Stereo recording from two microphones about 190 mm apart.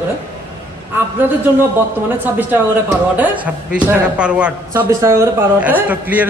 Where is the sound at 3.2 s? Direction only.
10° right (ahead or behind).